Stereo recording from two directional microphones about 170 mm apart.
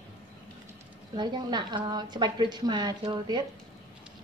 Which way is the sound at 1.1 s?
25° right (ahead or behind).